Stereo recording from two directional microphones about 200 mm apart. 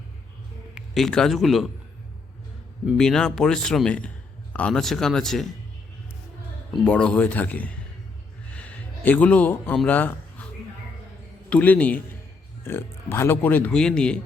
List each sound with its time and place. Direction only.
0.7 s a man's voice: centre (ahead or behind)
2.8 s a man's voice: 5° left (ahead or behind)
6.8 s speech: 5° left (ahead or behind)
8.4 s a sound: 5° left (ahead or behind)
11.4 s speech: 5° left (ahead or behind)